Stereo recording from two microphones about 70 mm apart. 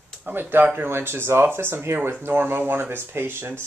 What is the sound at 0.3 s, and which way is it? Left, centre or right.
Speech, right.